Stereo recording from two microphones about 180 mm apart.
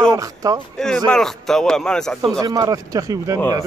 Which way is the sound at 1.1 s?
5° left (ahead or behind).